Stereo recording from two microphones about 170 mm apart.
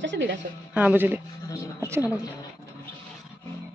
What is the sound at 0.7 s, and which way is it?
Speech, 10° right (ahead or behind).